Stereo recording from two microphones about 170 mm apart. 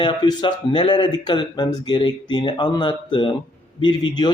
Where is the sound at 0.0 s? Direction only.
25° left (ahead or behind).